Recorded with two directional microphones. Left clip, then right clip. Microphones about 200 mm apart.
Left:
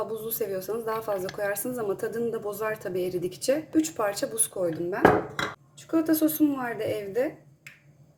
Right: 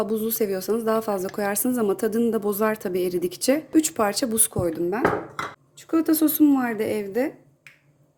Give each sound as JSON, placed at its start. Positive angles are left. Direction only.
{"t": 0.0, "sound": "a woman's voice", "side_deg": -40}